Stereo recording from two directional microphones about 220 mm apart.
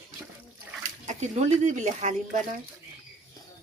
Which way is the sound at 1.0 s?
30° right (ahead or behind).